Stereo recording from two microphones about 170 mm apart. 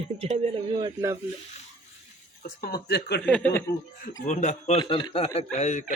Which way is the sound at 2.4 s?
60° left (ahead or behind).